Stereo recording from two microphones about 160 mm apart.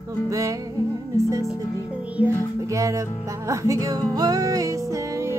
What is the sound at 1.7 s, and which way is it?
Music, 20° left (ahead or behind).